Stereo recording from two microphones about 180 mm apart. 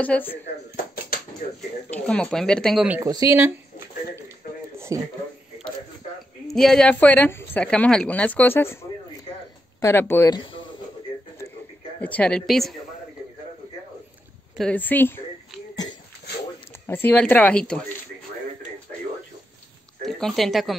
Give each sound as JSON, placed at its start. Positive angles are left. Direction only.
{"t": 0.0, "sound": "a woman's voice", "side_deg": 10}
{"t": 1.9, "sound": "speech", "side_deg": 5}
{"t": 3.0, "sound": "speech", "side_deg": -20}
{"t": 4.7, "sound": "a sound", "side_deg": -15}
{"t": 6.4, "sound": "a woman's voice", "side_deg": 0}
{"t": 9.8, "sound": "a woman's voice", "side_deg": 15}
{"t": 12.0, "sound": "speech", "side_deg": 5}
{"t": 14.6, "sound": "a woman's voice", "side_deg": 10}
{"t": 15.7, "sound": "a sound", "side_deg": 20}
{"t": 16.8, "sound": "a woman's voice", "side_deg": 10}
{"t": 20.0, "sound": "speech", "side_deg": 5}